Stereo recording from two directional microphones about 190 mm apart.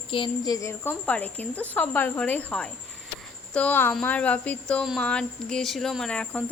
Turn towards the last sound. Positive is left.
turn(degrees=5)  # may be behind; listen again after turning